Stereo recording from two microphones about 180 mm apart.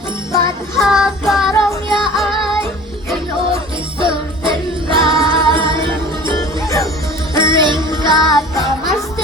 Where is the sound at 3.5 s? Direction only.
30° right (ahead or behind).